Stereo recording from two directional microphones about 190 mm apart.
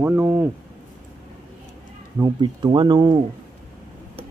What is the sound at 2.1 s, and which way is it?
Speech, 20° right (ahead or behind).